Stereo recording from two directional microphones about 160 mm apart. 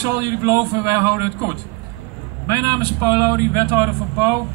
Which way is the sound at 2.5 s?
25° right (ahead or behind).